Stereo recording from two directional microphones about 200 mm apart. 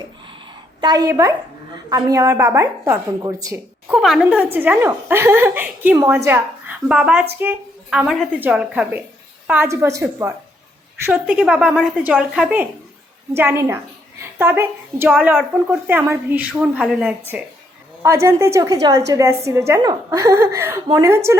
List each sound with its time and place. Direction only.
0.8 s a woman's voice: 20° right (ahead or behind)
3.9 s a woman's voice: centre (ahead or behind); by 21.2 s 15° right (ahead or behind)